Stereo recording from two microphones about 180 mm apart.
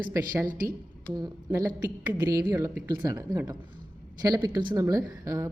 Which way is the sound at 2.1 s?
20° right (ahead or behind).